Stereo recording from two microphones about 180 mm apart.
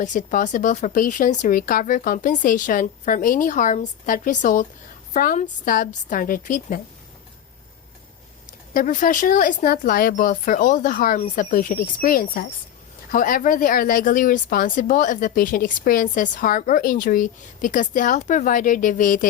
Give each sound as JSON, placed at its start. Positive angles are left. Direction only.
{"t": 0.0, "sound": "speech", "side_deg": 45}
{"t": 8.7, "sound": "speech", "side_deg": 50}